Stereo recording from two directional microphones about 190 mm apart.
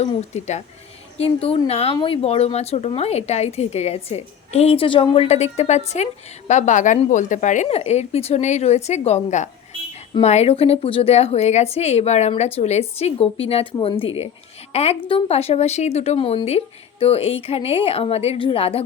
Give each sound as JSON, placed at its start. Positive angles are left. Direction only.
{"t": 0.0, "sound": "speech", "side_deg": 35}